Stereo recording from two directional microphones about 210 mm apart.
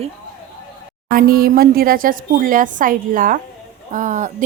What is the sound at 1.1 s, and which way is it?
A woman's voice, 45° right (ahead or behind).